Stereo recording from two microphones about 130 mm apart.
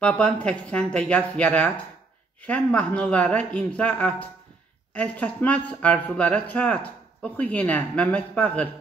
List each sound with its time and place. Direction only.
0.0 s speech: 10° left (ahead or behind)